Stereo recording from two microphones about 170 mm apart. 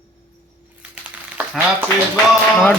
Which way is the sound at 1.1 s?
10° right (ahead or behind).